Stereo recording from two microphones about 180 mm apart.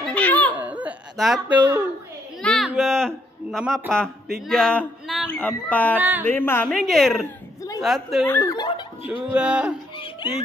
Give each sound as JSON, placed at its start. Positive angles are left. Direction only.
{"t": 0.0, "sound": "laughter", "side_deg": 5}
{"t": 0.6, "sound": "a sound", "side_deg": -10}
{"t": 2.4, "sound": "speech", "side_deg": 0}
{"t": 5.9, "sound": "speech", "side_deg": -10}
{"t": 6.2, "sound": "speech", "side_deg": 10}
{"t": 7.2, "sound": "a sound", "side_deg": 20}
{"t": 7.8, "sound": "speech", "side_deg": 0}
{"t": 8.3, "sound": "speech", "side_deg": 15}
{"t": 9.1, "sound": "speech", "side_deg": -5}
{"t": 9.9, "sound": "laughter", "side_deg": 25}